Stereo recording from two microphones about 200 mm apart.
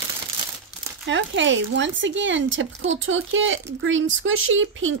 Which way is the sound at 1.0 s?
65° right (ahead or behind).